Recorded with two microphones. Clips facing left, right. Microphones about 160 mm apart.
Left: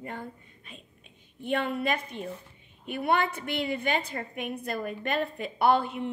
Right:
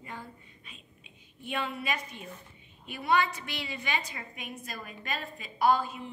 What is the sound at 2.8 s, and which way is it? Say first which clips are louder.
A woman's voice: left 1 dB; 55° left (ahead or behind).